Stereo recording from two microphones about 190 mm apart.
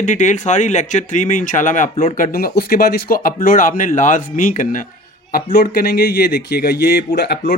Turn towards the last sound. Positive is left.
turn(degrees=60)  # may be behind; listen again after turning